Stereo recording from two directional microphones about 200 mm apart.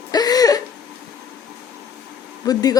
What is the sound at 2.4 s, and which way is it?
Speech, 20° left (ahead or behind).